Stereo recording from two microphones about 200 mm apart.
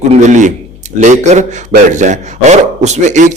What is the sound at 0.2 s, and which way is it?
A man's voice, 35° right (ahead or behind).